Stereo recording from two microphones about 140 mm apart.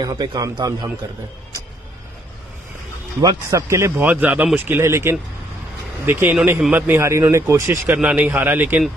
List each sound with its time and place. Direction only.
0.0 s a man's voice: 30° right (ahead or behind)
3.2 s a man's voice: 25° right (ahead or behind)